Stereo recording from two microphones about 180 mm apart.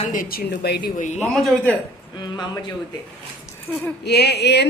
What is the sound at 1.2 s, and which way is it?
Speech, centre (ahead or behind).